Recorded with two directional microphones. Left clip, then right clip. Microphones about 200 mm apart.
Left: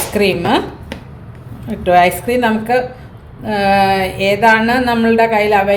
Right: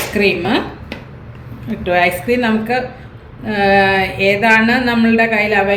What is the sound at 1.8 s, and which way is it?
A woman's voice, 55° left (ahead or behind).